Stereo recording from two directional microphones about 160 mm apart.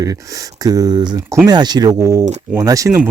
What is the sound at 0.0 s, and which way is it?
Speech, 20° right (ahead or behind).